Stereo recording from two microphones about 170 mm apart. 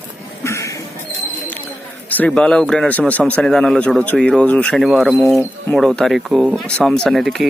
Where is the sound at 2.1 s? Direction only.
10° left (ahead or behind).